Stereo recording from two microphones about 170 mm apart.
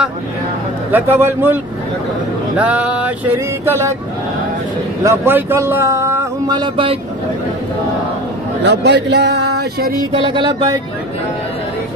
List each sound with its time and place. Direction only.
0.9 s speech: 15° right (ahead or behind)
5.0 s speech: 15° right (ahead or behind); by 7.0 s 30° right (ahead or behind)
8.6 s speech: 90° right; by 9.9 s 70° right (ahead or behind)
10.1 s a sound: 30° right (ahead or behind)